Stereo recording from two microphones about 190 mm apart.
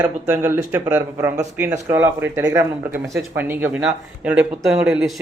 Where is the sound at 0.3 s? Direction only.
10° right (ahead or behind).